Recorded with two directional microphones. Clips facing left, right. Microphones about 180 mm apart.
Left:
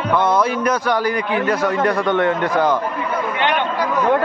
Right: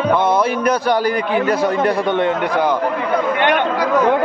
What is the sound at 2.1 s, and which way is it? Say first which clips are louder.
Speech: even; 20° right (ahead or behind).